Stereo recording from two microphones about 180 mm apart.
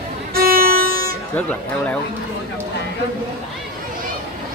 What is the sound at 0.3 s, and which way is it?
Music, 55° right (ahead or behind).